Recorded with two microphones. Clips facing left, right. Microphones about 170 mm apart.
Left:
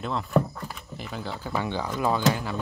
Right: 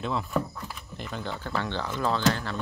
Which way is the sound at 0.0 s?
Centre (ahead or behind).